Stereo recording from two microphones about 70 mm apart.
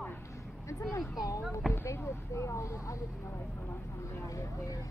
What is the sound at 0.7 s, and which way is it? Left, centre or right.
Speech, left.